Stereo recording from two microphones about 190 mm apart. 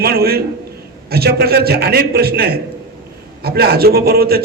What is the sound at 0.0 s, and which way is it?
A man's voice, 55° right (ahead or behind).